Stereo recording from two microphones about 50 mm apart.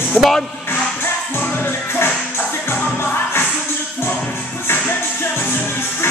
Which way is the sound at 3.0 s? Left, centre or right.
Left.